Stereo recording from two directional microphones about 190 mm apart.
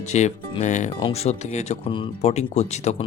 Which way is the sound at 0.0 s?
35° left (ahead or behind).